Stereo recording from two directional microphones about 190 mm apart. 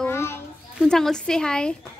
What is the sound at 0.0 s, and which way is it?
Children playing, 15° left (ahead or behind).